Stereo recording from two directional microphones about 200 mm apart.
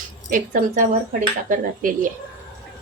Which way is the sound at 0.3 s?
40° right (ahead or behind).